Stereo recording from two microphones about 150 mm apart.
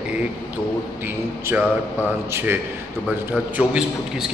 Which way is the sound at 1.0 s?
15° right (ahead or behind).